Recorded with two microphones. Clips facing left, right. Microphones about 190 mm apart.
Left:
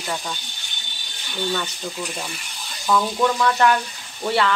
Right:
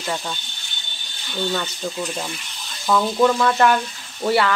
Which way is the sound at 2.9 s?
10° right (ahead or behind).